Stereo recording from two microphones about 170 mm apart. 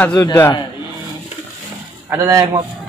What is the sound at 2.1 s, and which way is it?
Speech, 15° right (ahead or behind).